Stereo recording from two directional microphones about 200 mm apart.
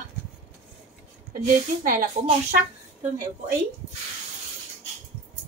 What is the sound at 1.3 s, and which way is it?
Speech, 40° right (ahead or behind).